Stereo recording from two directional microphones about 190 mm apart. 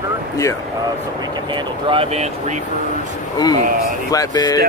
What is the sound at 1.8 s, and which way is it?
Speech, 30° right (ahead or behind).